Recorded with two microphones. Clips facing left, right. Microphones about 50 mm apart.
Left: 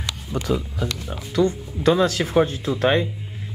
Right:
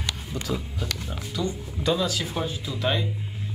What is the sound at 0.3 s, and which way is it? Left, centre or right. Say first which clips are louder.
Speech: left 9 dB; left.